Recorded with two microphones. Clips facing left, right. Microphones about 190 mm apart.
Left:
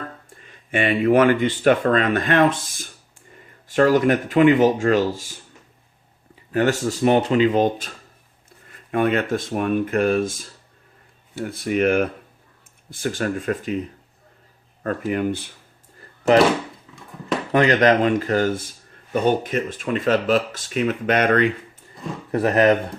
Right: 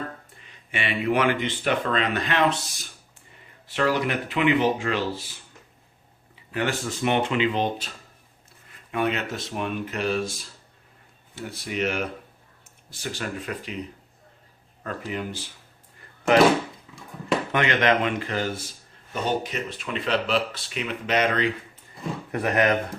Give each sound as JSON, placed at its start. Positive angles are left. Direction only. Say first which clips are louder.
{"t": 0.3, "sound": "speech", "louder": "left 9 dB", "side_deg": 45}
{"t": 6.5, "sound": "speech", "louder": "left 7 dB", "side_deg": 45}
{"t": 11.4, "sound": "speech", "louder": "left 8 dB", "side_deg": 50}
{"t": 14.8, "sound": "speech", "louder": "left 9 dB", "side_deg": 50}
{"t": 17.5, "sound": "speech", "louder": "left 7 dB", "side_deg": 35}
{"t": 22.3, "sound": "speech", "louder": "left 6 dB", "side_deg": 35}